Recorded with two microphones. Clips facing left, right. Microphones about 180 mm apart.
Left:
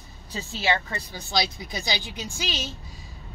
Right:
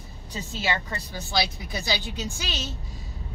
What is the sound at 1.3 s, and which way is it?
Speech, 15° left (ahead or behind).